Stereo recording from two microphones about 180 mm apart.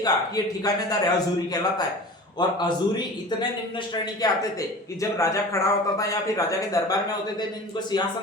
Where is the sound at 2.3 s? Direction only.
25° left (ahead or behind).